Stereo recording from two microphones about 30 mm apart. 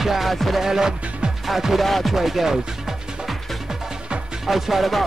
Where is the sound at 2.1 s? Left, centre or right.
Centre.